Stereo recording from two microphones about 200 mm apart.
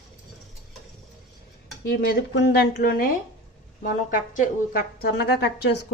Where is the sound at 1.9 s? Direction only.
50° left (ahead or behind).